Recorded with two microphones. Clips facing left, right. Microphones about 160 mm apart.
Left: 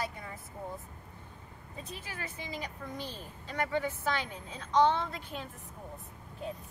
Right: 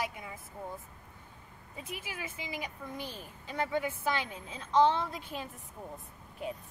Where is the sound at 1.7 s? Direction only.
10° right (ahead or behind).